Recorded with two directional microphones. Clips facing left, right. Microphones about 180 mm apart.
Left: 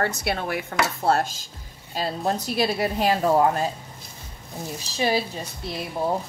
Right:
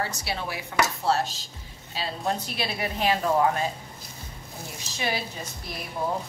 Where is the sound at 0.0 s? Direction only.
55° left (ahead or behind).